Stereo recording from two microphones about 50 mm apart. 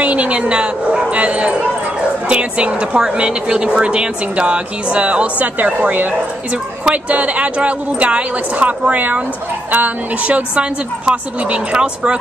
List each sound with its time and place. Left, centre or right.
0.0 s speech: right
6.8 s speech: right